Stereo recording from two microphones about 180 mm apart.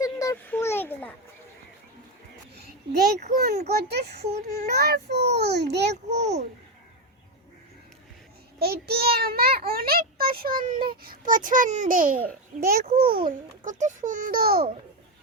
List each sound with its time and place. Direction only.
0.0 s children playing: 15° left (ahead or behind)
2.6 s a sound: 65° right (ahead or behind)
3.6 s a child's voice: 65° right (ahead or behind)
4.2 s speech: 35° right (ahead or behind)
4.7 s a child's voice: 65° right (ahead or behind)
6.1 s speech: 40° right (ahead or behind)
8.5 s a child's voice: 60° right (ahead or behind)